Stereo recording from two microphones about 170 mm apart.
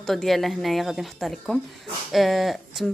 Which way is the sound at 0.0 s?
Centre (ahead or behind).